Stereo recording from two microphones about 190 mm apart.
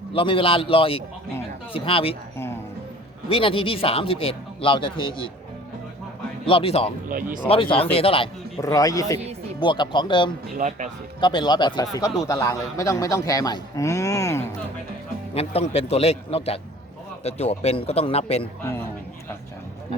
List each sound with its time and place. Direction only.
0.1 s speech: 25° left (ahead or behind)
3.2 s speech: 30° left (ahead or behind)
6.4 s speech: 30° left (ahead or behind)
7.1 s speech: 45° right (ahead or behind)
7.4 s speech: 30° left (ahead or behind)
8.6 s speech: 20° left (ahead or behind)
10.6 s speech: 40° right (ahead or behind)
11.2 s speech: 25° left (ahead or behind)
15.4 s a man's voice: 30° left (ahead or behind)